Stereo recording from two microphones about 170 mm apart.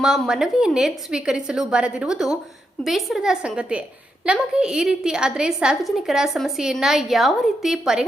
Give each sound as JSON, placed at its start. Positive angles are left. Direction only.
{"t": 0.0, "sound": "a woman's voice", "side_deg": -5}